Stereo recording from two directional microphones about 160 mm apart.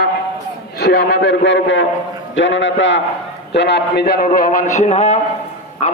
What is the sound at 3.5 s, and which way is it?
A man's voice, 90° left.